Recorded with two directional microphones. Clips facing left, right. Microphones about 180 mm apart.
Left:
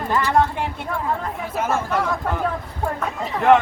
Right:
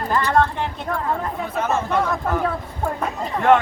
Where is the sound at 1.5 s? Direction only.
10° left (ahead or behind).